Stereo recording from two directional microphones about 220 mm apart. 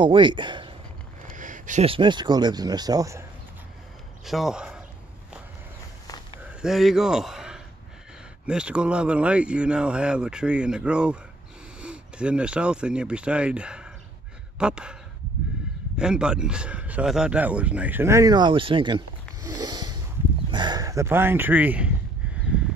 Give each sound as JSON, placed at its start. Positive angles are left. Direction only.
{"t": 0.0, "sound": "speech", "side_deg": -20}
{"t": 1.3, "sound": "speech", "side_deg": -35}
{"t": 4.2, "sound": "a man's voice", "side_deg": 0}
{"t": 6.6, "sound": "a man's voice", "side_deg": 0}
{"t": 16.0, "sound": "speech", "side_deg": -5}
{"t": 19.4, "sound": "snort", "side_deg": -20}
{"t": 20.5, "sound": "a sound", "side_deg": -20}